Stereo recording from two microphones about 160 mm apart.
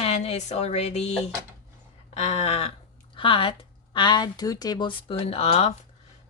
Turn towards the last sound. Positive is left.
turn(degrees=40)  # may be behind; listen again after turning